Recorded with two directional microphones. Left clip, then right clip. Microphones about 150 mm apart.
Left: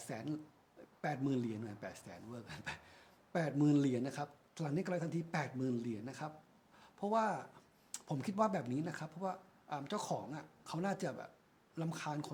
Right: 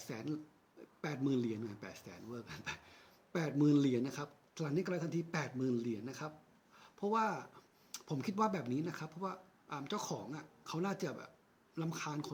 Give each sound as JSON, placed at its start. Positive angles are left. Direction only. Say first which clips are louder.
{"t": 0.0, "sound": "speech", "louder": "even", "side_deg": 15}
{"t": 6.7, "sound": "a sound", "louder": "even", "side_deg": 20}
{"t": 7.9, "sound": "speech", "louder": "left 1 dB", "side_deg": 20}